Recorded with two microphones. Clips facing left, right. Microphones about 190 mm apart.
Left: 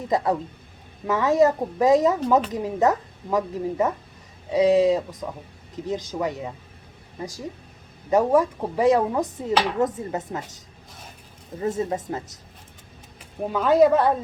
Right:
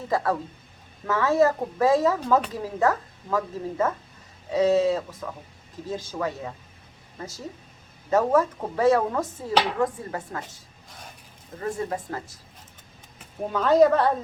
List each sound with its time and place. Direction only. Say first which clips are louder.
0.1 s speech: left 2 dB; 20° left (ahead or behind)
11.6 s speech: left 4 dB; 20° left (ahead or behind)
13.5 s speech: left 1 dB; 10° left (ahead or behind)